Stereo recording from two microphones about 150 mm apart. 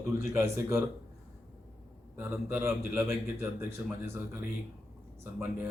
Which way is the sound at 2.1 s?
15° right (ahead or behind).